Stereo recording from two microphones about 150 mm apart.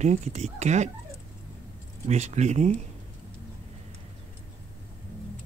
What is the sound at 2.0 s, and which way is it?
Speech, 50° right (ahead or behind).